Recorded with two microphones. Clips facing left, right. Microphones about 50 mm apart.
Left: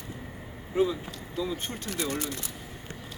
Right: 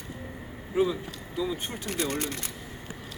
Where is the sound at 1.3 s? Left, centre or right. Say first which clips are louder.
Right 1 dB; centre.